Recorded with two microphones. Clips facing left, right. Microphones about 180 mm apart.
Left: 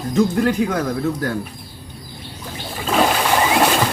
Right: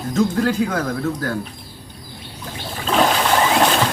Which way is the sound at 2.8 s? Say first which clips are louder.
Even; 5° left (ahead or behind).